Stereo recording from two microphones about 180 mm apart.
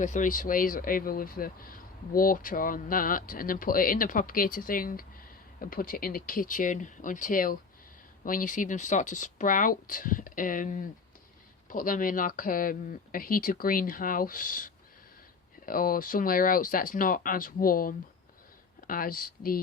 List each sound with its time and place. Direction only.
0.0 s speech: 45° left (ahead or behind)